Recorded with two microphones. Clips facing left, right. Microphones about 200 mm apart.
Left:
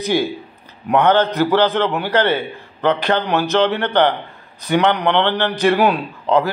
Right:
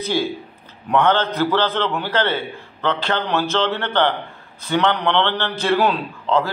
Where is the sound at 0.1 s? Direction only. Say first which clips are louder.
Left 3 dB; 15° left (ahead or behind).